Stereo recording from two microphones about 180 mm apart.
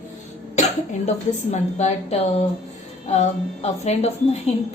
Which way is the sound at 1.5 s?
40° left (ahead or behind).